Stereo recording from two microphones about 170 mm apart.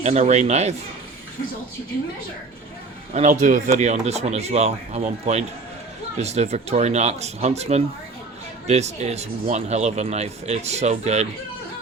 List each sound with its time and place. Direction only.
0.0 s speech: 40° right (ahead or behind)
3.1 s speech: 45° right (ahead or behind)